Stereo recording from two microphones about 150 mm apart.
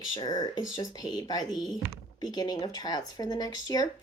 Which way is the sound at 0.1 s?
35° left (ahead or behind).